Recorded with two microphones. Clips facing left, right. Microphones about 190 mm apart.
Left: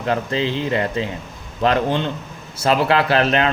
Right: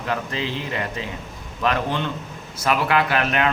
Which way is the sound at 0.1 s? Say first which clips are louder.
Left 6 dB; 30° left (ahead or behind).